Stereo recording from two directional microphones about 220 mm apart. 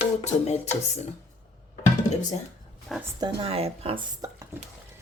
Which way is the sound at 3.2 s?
20° right (ahead or behind).